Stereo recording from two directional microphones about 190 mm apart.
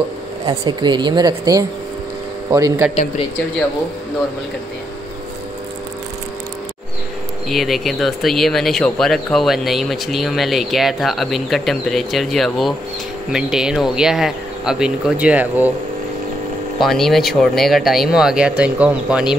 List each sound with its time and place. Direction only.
0.5 s speech: 25° right (ahead or behind)
7.4 s speech: centre (ahead or behind)
16.8 s speech: centre (ahead or behind)